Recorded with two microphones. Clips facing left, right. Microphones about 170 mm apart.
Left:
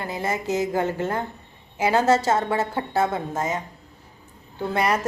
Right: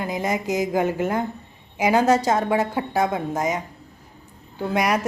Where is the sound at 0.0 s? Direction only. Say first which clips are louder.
Right 2 dB; 15° right (ahead or behind).